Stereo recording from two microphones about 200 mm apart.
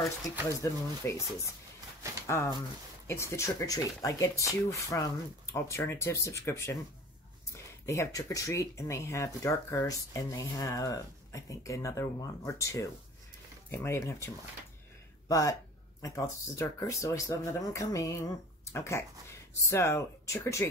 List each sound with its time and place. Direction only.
0.6 s speech: 15° left (ahead or behind)